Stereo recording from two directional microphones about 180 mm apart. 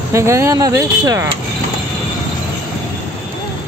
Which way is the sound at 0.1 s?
15° right (ahead or behind).